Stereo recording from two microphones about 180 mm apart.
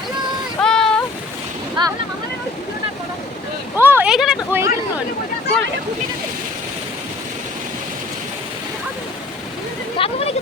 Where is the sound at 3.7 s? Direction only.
10° right (ahead or behind).